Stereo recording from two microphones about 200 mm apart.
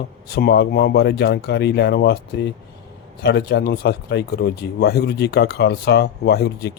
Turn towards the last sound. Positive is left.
turn(degrees=55)  # may be behind; listen again after turning